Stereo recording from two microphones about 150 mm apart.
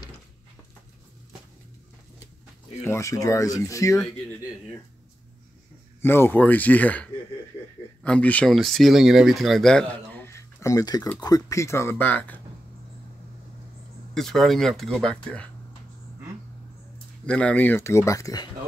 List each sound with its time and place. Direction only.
2.8 s speech: 20° left (ahead or behind)
5.9 s speech: 15° left (ahead or behind)
14.1 s speech: centre (ahead or behind)
17.3 s speech: 5° left (ahead or behind); by 18.5 s 25° left (ahead or behind)